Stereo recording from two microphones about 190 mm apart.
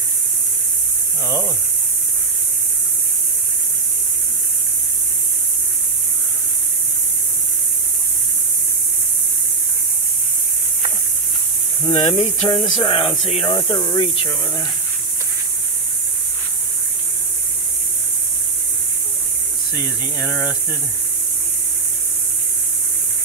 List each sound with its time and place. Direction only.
1.2 s speech: 15° right (ahead or behind)
11.8 s speech: 15° left (ahead or behind)
12.1 s speech: 25° left (ahead or behind)